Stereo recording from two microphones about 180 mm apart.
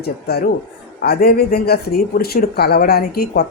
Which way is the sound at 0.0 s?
60° left (ahead or behind).